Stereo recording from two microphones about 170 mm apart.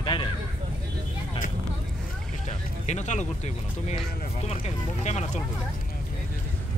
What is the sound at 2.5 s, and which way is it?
Music, 45° left (ahead or behind).